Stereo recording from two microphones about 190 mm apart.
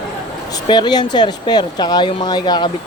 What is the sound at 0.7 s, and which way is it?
Speech, 20° left (ahead or behind).